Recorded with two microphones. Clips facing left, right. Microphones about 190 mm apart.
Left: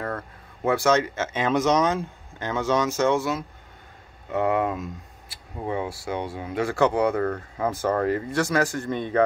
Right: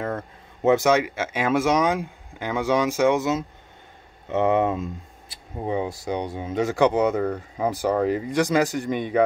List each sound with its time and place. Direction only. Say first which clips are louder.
0.0 s speech: right 2 dB; 20° right (ahead or behind)